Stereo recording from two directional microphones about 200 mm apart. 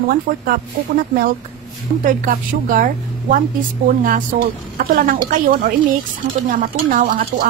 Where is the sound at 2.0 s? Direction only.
40° right (ahead or behind).